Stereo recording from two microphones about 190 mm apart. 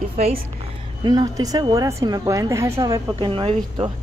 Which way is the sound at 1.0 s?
20° right (ahead or behind).